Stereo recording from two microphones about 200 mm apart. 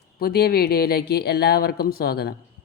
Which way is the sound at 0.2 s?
50° left (ahead or behind).